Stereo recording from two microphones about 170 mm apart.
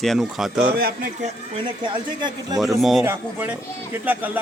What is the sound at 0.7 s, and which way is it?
Speech, 60° right (ahead or behind).